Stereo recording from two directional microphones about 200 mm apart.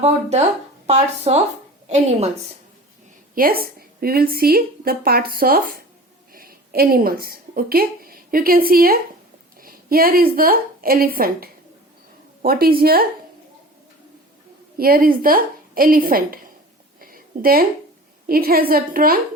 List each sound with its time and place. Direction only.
0.0 s speech: 35° right (ahead or behind)
3.3 s a woman's voice: 45° right (ahead or behind)
14.8 s speech: 45° right (ahead or behind)
17.0 s a sound: 45° right (ahead or behind)
18.3 s speech: 50° right (ahead or behind)